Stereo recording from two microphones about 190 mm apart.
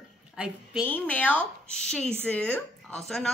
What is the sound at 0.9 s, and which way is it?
A woman's voice, 10° left (ahead or behind).